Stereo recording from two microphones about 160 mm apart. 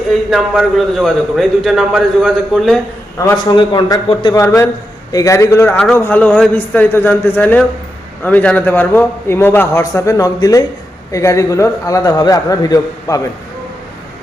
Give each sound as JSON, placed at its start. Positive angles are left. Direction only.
{"t": 0.3, "sound": "a man's voice", "side_deg": 0}
{"t": 3.5, "sound": "a man's voice", "side_deg": 25}